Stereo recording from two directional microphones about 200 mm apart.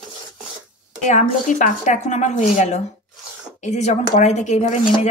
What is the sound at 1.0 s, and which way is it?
A woman's voice, 40° left (ahead or behind).